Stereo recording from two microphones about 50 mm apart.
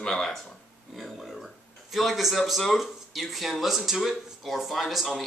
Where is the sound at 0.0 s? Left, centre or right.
Centre.